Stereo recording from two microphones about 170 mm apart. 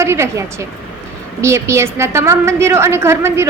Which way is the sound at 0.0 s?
15° right (ahead or behind).